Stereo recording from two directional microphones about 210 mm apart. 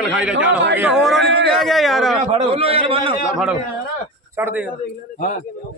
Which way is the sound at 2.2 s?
30° right (ahead or behind).